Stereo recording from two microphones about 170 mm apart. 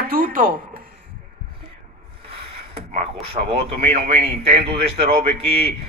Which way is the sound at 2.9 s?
35° right (ahead or behind).